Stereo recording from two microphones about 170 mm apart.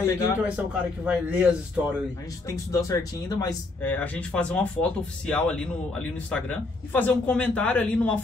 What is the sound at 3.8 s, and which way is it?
A man's voice, 10° left (ahead or behind).